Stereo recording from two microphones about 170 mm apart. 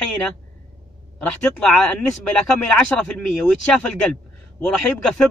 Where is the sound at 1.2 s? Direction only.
5° left (ahead or behind).